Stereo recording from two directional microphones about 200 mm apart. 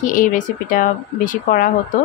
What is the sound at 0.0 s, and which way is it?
Speech, 40° left (ahead or behind).